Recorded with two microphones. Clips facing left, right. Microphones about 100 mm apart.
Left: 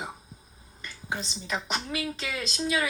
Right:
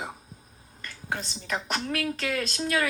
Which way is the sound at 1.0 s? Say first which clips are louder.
Right 1 dB; 15° left (ahead or behind).